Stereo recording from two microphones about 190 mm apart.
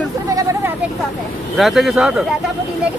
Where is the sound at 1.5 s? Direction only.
Centre (ahead or behind).